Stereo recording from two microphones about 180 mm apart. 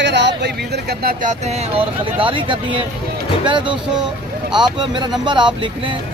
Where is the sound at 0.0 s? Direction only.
75° right (ahead or behind); by 1.6 s 40° right (ahead or behind).